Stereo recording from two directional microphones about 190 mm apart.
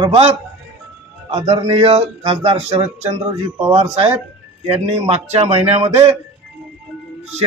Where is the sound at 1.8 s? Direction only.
30° right (ahead or behind).